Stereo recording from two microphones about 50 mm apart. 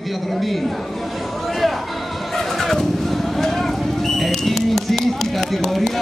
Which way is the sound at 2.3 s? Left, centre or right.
Centre.